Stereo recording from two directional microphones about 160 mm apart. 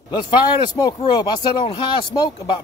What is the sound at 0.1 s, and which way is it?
Speech, 30° left (ahead or behind).